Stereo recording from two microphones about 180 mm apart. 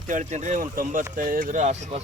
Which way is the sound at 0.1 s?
45° right (ahead or behind).